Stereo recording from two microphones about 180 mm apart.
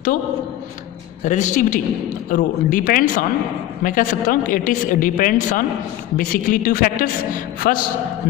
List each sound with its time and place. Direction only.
1.2 s a woman's voice: 45° left (ahead or behind)